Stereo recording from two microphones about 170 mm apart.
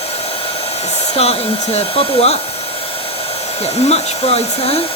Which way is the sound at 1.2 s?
35° left (ahead or behind).